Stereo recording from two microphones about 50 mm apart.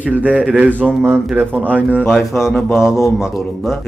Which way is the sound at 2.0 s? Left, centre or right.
Centre.